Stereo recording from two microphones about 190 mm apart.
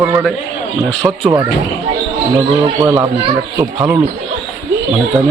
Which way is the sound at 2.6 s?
20° right (ahead or behind).